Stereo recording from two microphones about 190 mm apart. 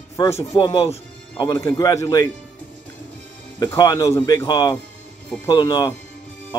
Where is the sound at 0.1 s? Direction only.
15° left (ahead or behind).